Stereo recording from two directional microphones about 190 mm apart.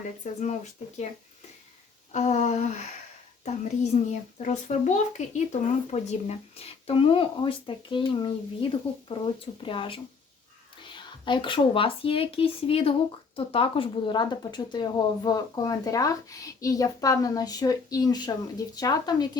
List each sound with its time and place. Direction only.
0.2 s a child's voice: 40° left (ahead or behind)
2.1 s a child's voice: 35° left (ahead or behind); by 19.4 s 20° left (ahead or behind)